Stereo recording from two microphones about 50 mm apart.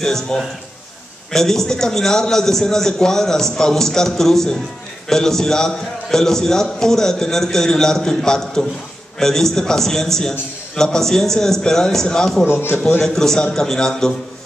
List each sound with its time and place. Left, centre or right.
0.0 s a man's voice: centre
12.4 s a man's voice: left
13.0 s a man's voice: centre